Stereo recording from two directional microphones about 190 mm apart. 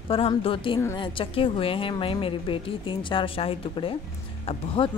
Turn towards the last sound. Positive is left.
turn(degrees=30)  # may be behind; listen again after turning